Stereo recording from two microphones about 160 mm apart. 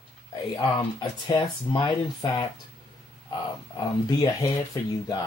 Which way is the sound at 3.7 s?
20° left (ahead or behind).